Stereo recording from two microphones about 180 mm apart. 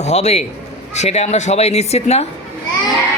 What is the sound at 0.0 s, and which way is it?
Speech, 40° left (ahead or behind).